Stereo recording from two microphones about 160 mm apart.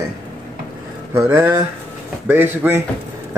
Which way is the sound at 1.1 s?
15° right (ahead or behind).